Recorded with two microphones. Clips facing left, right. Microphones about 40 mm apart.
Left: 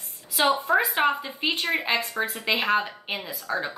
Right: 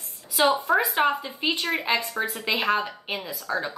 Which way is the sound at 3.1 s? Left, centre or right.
Left.